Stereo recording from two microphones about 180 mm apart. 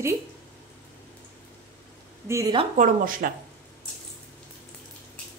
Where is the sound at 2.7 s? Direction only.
50° right (ahead or behind).